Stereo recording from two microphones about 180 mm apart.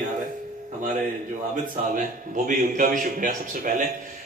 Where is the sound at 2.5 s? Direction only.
45° right (ahead or behind).